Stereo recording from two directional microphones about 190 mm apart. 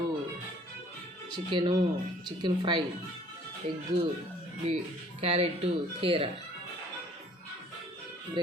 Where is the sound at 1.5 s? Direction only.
25° right (ahead or behind).